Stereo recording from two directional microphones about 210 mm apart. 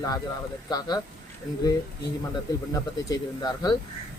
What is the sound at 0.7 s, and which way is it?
Speech, 20° left (ahead or behind).